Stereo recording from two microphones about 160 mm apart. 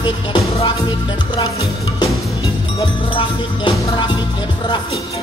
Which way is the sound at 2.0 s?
30° left (ahead or behind).